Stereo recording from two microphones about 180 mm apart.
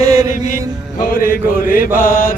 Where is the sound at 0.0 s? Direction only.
20° right (ahead or behind).